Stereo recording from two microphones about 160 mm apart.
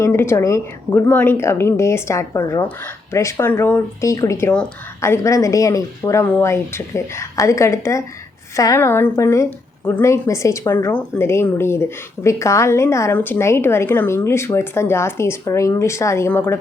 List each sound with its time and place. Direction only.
0.0 s a woman's voice: 15° left (ahead or behind)